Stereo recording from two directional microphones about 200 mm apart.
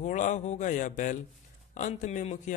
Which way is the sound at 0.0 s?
35° left (ahead or behind).